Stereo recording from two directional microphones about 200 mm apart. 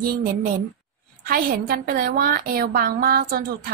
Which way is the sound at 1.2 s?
45° right (ahead or behind).